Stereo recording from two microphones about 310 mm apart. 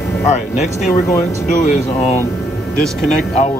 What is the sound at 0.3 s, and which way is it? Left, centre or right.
Speech, left.